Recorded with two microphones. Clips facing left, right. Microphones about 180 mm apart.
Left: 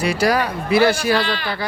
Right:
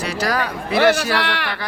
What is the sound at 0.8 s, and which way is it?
Speech, 70° right (ahead or behind).